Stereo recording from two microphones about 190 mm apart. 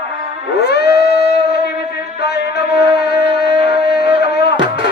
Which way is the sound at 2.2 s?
60° left (ahead or behind).